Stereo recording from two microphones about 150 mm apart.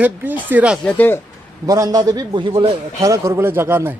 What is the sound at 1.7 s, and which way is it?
A man's voice, 25° right (ahead or behind).